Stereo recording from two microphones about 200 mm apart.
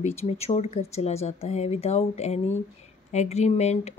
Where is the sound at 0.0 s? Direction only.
30° left (ahead or behind).